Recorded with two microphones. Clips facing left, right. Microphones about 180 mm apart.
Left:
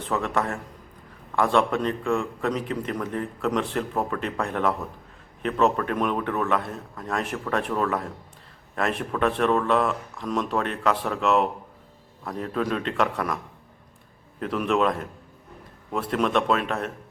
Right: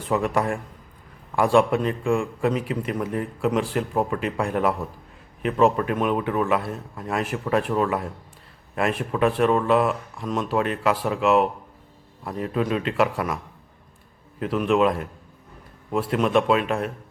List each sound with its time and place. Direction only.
0.0 s a man's voice: 10° right (ahead or behind)